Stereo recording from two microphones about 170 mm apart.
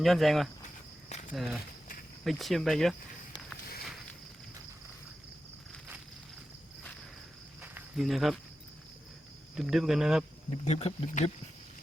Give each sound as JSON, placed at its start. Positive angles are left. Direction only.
{"t": 0.0, "sound": "speech", "side_deg": 0}
{"t": 7.6, "sound": "cricket", "side_deg": -10}
{"t": 7.9, "sound": "speech", "side_deg": 0}
{"t": 9.6, "sound": "speech", "side_deg": 0}
{"t": 10.7, "sound": "speech", "side_deg": 40}